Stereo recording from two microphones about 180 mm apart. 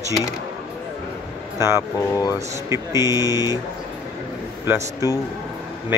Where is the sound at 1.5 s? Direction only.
15° right (ahead or behind).